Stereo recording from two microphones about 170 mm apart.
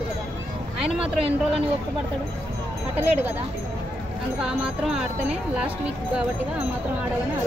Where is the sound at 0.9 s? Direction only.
35° right (ahead or behind).